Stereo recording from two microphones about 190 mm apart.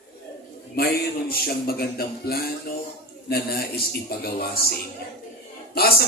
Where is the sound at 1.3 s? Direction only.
55° left (ahead or behind).